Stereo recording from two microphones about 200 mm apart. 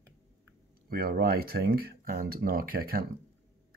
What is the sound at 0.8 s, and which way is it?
Speech, 50° right (ahead or behind).